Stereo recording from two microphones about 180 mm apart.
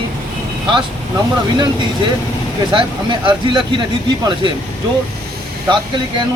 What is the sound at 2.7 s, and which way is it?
Speech, 25° right (ahead or behind).